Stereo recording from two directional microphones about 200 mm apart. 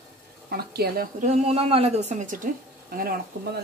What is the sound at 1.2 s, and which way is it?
A woman's voice, 30° right (ahead or behind).